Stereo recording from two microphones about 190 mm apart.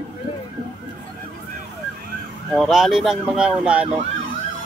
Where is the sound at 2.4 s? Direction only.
Centre (ahead or behind).